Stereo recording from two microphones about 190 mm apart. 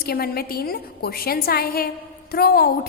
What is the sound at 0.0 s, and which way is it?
A woman's voice, 55° left (ahead or behind).